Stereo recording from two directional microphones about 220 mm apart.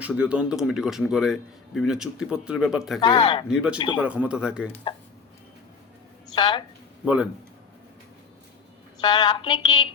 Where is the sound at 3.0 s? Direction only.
20° left (ahead or behind).